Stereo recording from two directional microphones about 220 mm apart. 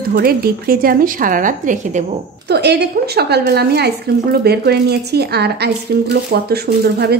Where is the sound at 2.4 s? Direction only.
50° right (ahead or behind).